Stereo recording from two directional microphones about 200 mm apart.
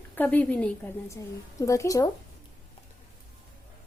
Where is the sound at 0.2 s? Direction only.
10° left (ahead or behind).